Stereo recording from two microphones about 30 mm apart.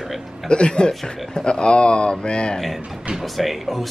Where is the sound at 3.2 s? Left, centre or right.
Centre.